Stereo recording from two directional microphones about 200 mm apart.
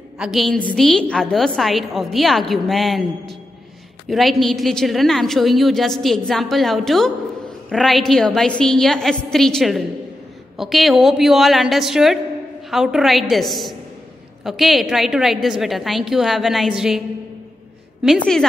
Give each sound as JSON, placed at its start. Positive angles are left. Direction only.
{"t": 0.2, "sound": "a woman's voice", "side_deg": 0}
{"t": 18.0, "sound": "a woman's voice", "side_deg": 0}